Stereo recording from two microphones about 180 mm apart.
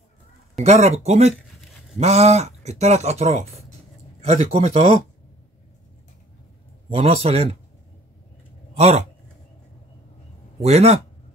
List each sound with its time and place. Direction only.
0.6 s speech: 35° right (ahead or behind)
6.9 s speech: 35° right (ahead or behind)
8.7 s speech: 35° right (ahead or behind)
10.6 s speech: 35° right (ahead or behind)